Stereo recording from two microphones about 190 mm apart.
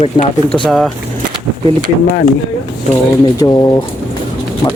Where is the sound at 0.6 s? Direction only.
Centre (ahead or behind).